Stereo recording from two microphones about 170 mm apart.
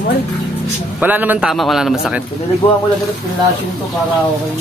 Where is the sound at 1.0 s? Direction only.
10° right (ahead or behind).